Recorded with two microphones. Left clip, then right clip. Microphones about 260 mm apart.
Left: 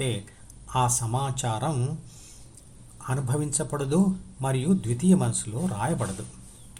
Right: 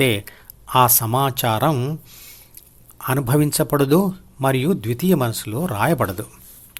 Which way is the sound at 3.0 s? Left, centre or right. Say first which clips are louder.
Right 11 dB; right.